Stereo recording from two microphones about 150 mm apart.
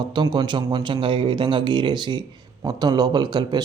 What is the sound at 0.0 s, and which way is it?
A man's voice, 30° right (ahead or behind).